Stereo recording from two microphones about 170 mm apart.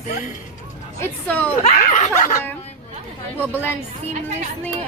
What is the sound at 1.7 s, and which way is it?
Speech, 50° left (ahead or behind).